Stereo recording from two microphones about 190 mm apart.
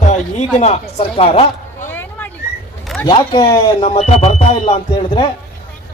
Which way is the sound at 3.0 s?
25° left (ahead or behind).